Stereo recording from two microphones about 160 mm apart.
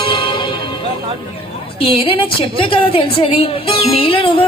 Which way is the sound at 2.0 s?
30° left (ahead or behind).